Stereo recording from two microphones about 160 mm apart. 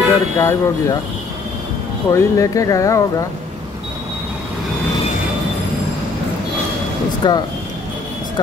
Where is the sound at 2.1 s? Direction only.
20° left (ahead or behind).